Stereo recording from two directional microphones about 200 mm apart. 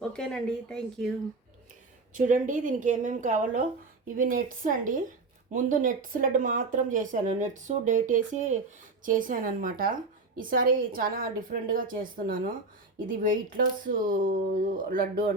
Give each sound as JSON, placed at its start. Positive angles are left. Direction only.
{"t": 0.1, "sound": "speech", "side_deg": 5}
{"t": 2.1, "sound": "a woman's voice", "side_deg": -40}